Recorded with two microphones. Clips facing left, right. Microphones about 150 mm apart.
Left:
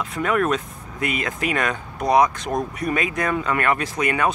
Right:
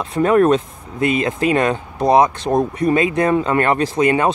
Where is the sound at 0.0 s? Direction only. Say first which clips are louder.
Right 8 dB; 30° right (ahead or behind).